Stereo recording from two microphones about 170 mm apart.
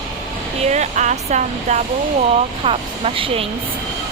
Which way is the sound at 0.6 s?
40° right (ahead or behind).